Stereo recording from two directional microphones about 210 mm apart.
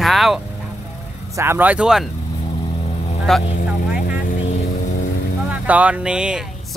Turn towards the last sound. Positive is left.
turn(degrees=-5)  # may be behind; listen again after turning